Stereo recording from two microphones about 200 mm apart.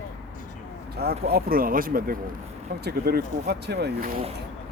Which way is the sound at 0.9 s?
50° right (ahead or behind).